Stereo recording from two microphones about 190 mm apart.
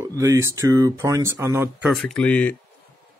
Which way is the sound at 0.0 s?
15° right (ahead or behind).